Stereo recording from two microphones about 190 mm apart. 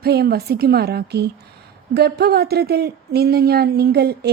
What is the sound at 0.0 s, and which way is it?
A woman's voice, 55° right (ahead or behind).